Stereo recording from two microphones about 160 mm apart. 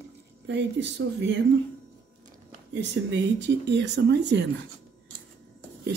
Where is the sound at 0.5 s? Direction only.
90° right.